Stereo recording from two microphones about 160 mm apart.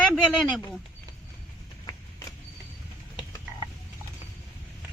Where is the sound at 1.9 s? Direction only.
20° left (ahead or behind).